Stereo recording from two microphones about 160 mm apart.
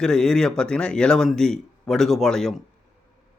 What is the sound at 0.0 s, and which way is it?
Speech, 5° left (ahead or behind).